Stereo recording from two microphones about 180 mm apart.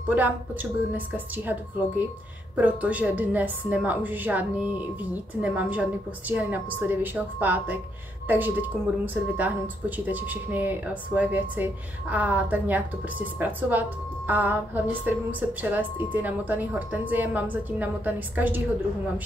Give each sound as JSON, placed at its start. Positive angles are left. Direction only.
{"t": 0.0, "sound": "a woman's voice", "side_deg": -10}